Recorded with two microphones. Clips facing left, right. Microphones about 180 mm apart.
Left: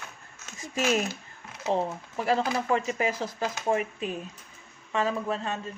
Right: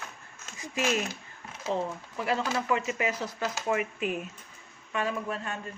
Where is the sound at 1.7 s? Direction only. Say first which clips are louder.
Left 3 dB; 40° left (ahead or behind).